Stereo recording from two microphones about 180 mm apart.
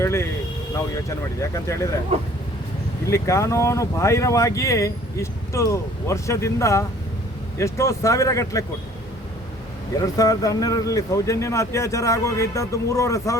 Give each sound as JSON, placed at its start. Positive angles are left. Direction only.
{"t": 0.0, "sound": "speech", "side_deg": 15}
{"t": 1.4, "sound": "speech", "side_deg": 15}
{"t": 3.1, "sound": "speech", "side_deg": 15}
{"t": 10.0, "sound": "speech", "side_deg": 20}